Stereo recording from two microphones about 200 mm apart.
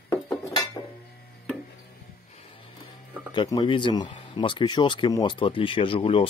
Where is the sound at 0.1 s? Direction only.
20° left (ahead or behind).